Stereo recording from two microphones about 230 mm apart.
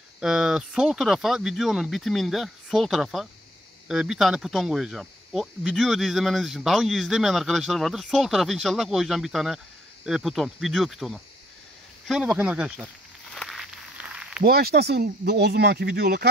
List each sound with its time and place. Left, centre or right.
0.2 s speech: centre
12.1 s snake: centre
14.4 s speech: right